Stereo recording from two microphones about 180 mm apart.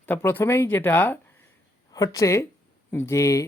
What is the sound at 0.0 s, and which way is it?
Speech, 10° left (ahead or behind).